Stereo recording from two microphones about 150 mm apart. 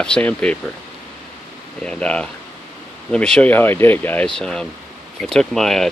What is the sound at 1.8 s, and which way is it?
Speech, 5° left (ahead or behind).